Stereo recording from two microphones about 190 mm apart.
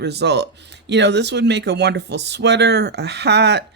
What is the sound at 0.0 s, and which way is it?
Speech, 60° right (ahead or behind).